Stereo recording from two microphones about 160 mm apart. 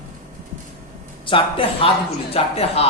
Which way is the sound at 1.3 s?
35° left (ahead or behind).